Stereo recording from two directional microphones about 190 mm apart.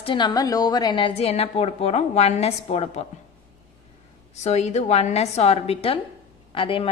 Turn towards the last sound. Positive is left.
turn(degrees=30)  # may be behind; listen again after turning